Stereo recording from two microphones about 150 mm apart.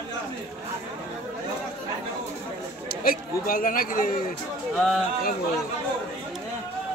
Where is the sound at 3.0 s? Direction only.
70° left (ahead or behind).